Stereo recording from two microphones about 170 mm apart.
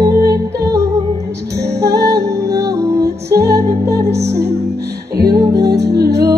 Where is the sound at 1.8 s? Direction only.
70° right (ahead or behind).